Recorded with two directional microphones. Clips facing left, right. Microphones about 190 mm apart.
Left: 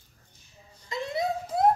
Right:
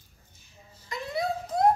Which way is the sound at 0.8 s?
25° left (ahead or behind).